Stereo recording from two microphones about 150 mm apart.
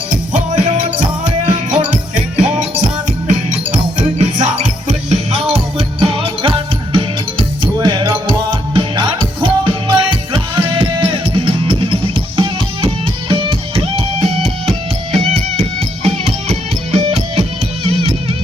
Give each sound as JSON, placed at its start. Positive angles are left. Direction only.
{"t": 0.3, "sound": "music", "side_deg": -50}
{"t": 1.9, "sound": "music", "side_deg": -55}
{"t": 4.2, "sound": "music", "side_deg": -50}